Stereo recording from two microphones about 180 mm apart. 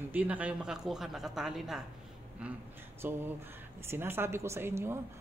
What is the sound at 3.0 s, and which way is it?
A man's voice, 10° right (ahead or behind).